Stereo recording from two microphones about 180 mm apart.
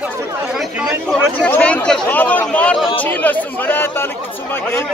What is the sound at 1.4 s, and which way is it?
Chatter, 5° left (ahead or behind).